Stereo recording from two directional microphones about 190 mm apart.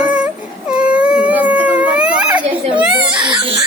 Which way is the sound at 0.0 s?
5° right (ahead or behind).